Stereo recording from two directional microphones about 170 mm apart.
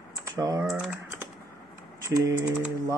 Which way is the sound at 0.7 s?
5° right (ahead or behind).